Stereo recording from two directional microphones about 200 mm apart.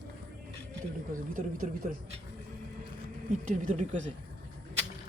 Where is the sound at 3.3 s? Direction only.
40° right (ahead or behind).